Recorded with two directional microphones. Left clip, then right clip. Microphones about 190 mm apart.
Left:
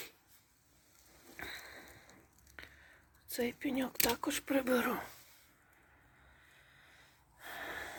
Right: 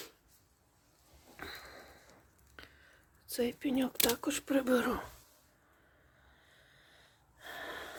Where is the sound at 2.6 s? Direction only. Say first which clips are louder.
Left 1 dB; 15° right (ahead or behind).